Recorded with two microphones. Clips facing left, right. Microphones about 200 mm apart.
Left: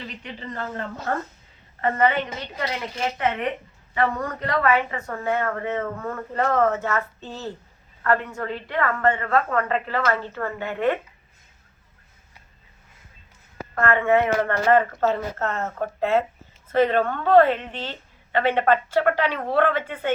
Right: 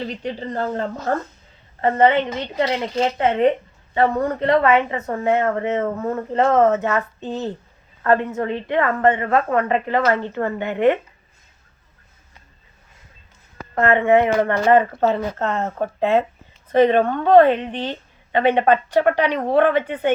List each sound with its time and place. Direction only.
0.0 s a woman's voice: 35° right (ahead or behind); by 10.9 s 20° right (ahead or behind)
13.7 s a woman's voice: 20° right (ahead or behind)